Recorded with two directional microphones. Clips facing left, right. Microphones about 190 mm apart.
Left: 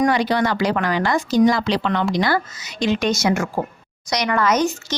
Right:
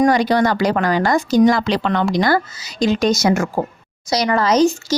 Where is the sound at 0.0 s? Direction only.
40° right (ahead or behind).